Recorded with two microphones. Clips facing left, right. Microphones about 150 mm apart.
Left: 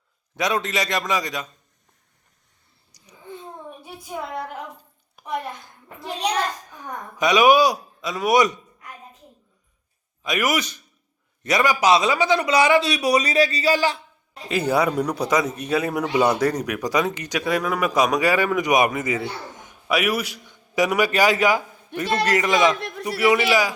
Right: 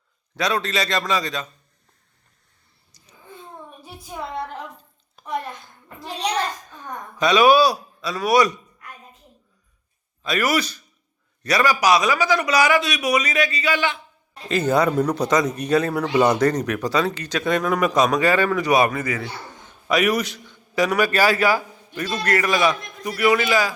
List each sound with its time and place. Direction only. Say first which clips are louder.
0.3 s speech: even; 20° left (ahead or behind)
2.9 s babbling: left 2 dB; 15° left (ahead or behind)
5.2 s a sound: even; 10° left (ahead or behind)
6.7 s a woman's voice: even; 15° left (ahead or behind)
10.2 s a man's voice: right 1 dB; 15° left (ahead or behind); by 14.0 s 35° left (ahead or behind)
14.4 s speech: right 2 dB; 10° left (ahead or behind)
19.9 s a man's voice: right 2 dB; 10° left (ahead or behind)